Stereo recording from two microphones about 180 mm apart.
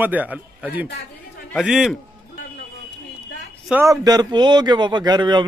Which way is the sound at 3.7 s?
10° right (ahead or behind).